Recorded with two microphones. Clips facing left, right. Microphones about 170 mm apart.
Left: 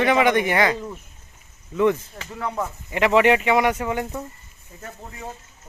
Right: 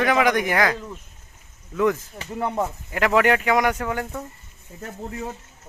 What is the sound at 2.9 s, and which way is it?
Speech, 5° left (ahead or behind).